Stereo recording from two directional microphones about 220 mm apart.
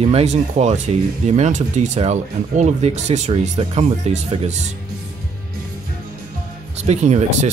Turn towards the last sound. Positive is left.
turn(degrees=-30)  # may be behind; listen again after turning